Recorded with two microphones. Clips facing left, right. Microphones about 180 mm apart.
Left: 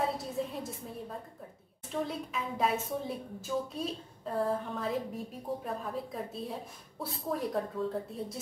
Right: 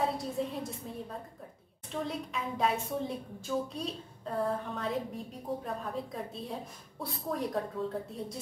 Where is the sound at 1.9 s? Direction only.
Centre (ahead or behind).